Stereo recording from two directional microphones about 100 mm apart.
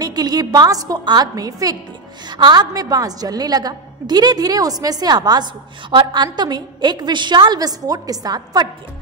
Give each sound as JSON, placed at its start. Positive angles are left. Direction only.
{"t": 0.0, "sound": "a woman's voice", "side_deg": -40}